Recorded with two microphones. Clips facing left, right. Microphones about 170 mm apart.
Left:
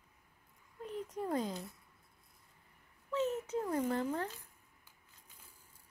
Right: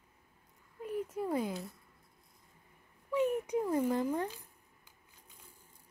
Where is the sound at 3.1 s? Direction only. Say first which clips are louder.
Right 4 dB; 15° right (ahead or behind).